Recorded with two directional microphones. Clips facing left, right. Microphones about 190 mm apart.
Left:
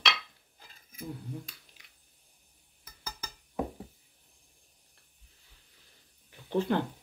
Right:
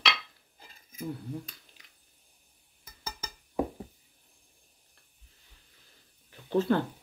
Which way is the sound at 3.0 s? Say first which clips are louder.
Right 2 dB; 25° right (ahead or behind).